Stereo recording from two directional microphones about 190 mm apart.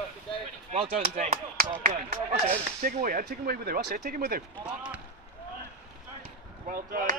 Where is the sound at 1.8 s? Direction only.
45° right (ahead or behind).